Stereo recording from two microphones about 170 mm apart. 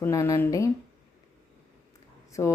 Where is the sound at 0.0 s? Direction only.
15° left (ahead or behind).